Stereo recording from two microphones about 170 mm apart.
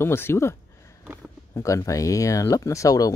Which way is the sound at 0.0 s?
15° left (ahead or behind).